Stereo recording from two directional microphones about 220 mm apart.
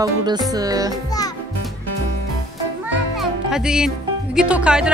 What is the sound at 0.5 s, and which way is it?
Speech, 15° right (ahead or behind).